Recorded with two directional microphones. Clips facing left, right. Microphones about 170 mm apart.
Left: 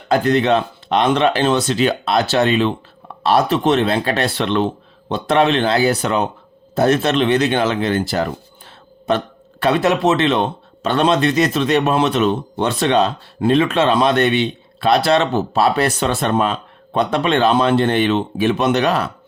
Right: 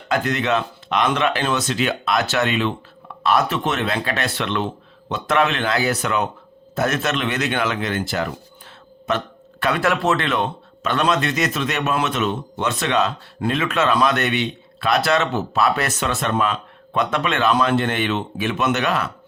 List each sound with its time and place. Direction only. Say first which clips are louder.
0.1 s speech: left 6 dB; 30° left (ahead or behind)